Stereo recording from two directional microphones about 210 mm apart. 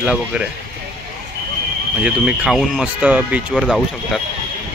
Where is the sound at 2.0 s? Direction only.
5° right (ahead or behind).